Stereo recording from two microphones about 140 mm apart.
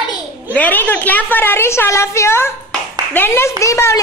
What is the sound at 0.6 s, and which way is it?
A woman's voice, 15° left (ahead or behind).